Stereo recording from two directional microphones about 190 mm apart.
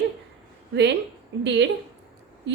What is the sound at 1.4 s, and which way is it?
Speech, 65° right (ahead or behind).